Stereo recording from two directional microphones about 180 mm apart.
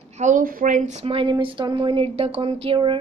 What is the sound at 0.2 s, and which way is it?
A woman's voice, 50° right (ahead or behind).